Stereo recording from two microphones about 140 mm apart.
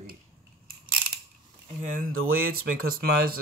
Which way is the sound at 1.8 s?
80° right.